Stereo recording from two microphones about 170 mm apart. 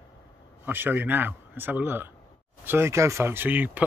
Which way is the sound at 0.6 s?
10° right (ahead or behind).